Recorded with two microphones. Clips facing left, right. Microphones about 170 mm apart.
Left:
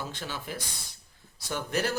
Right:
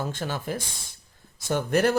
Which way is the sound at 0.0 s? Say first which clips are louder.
Right 7 dB; 50° right (ahead or behind).